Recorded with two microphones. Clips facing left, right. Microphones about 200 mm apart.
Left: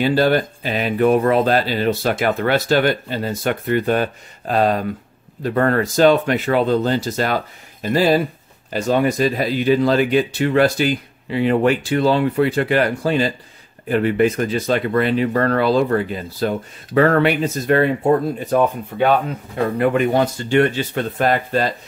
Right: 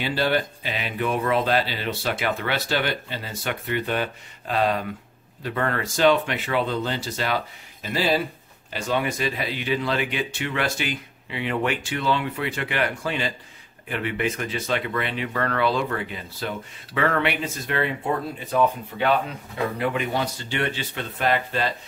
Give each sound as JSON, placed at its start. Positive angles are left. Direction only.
{"t": 0.0, "sound": "speech", "side_deg": 45}